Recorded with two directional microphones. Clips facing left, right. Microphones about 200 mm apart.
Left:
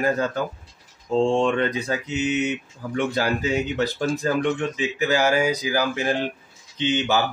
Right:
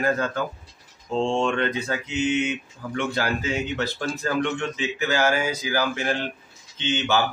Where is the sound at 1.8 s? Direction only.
40° left (ahead or behind).